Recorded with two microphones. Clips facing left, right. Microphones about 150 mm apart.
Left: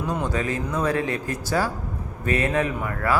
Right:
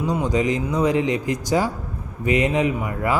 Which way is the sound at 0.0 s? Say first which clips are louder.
Right 5 dB; 10° right (ahead or behind).